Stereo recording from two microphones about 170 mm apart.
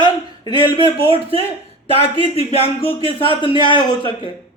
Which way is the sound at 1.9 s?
35° left (ahead or behind).